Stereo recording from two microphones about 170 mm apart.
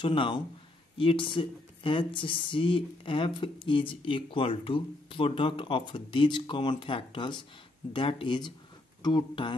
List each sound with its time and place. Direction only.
0.0 s speech: 30° left (ahead or behind)